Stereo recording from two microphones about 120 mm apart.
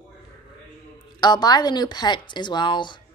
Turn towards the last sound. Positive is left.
turn(degrees=40)  # may be behind; listen again after turning